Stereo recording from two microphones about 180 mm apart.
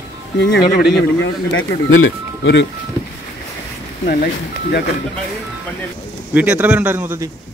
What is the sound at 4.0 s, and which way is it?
Speech, 50° left (ahead or behind).